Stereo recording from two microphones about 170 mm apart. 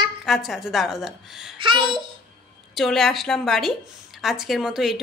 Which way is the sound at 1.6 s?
30° right (ahead or behind).